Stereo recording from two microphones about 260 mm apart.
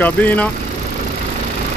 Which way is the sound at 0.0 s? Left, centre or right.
Centre.